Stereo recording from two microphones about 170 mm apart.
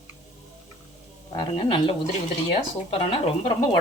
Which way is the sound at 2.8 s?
30° left (ahead or behind).